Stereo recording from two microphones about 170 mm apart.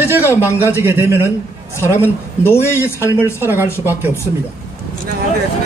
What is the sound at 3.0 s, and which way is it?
A man's voice, 10° right (ahead or behind).